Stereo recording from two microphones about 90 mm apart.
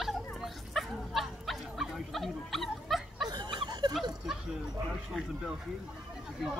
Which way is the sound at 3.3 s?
55° right (ahead or behind).